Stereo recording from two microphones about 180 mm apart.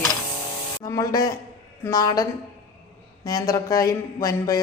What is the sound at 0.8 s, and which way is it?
A woman's voice, 20° left (ahead or behind).